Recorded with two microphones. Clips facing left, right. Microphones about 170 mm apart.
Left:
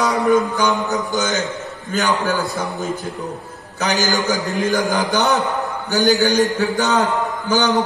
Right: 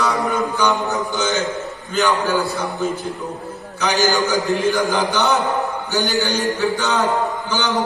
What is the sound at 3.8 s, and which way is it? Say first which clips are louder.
A man's voice: right 1 dB; 40° left (ahead or behind).